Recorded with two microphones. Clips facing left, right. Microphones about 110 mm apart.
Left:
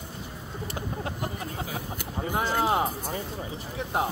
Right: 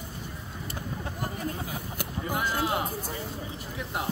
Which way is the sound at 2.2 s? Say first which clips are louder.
Left 3 dB; 40° left (ahead or behind).